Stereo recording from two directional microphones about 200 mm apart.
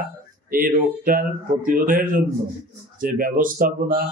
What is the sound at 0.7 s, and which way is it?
Speech, 45° right (ahead or behind).